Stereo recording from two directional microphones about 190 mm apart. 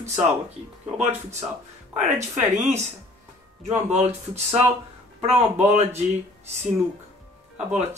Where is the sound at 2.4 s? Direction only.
35° right (ahead or behind).